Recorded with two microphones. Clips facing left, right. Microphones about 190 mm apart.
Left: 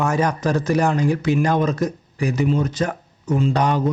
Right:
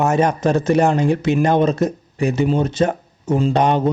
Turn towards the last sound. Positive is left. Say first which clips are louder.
# right 3 dB
turn(degrees=-25)  # may be behind; listen again after turning